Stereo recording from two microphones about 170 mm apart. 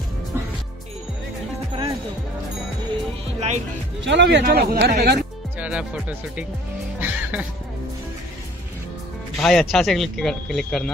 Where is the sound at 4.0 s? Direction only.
90° right; by 5.2 s 70° right (ahead or behind).